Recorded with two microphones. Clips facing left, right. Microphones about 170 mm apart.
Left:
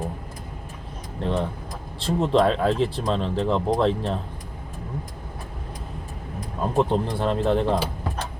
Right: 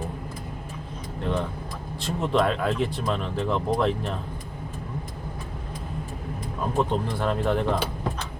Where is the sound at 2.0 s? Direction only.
30° left (ahead or behind).